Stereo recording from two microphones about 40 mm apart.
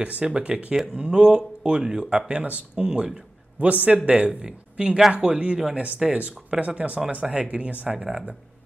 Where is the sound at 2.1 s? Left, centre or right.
Right.